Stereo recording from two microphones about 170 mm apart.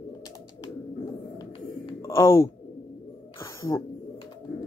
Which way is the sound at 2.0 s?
15° left (ahead or behind).